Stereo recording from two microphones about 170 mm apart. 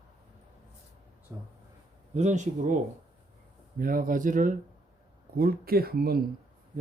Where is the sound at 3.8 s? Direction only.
55° right (ahead or behind).